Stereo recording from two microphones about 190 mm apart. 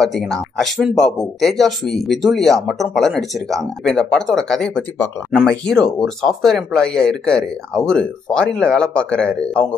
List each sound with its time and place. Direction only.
0.0 s speech: centre (ahead or behind)